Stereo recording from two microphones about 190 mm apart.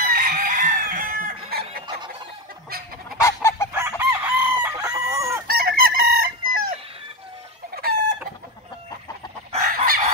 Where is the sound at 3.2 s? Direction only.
15° left (ahead or behind).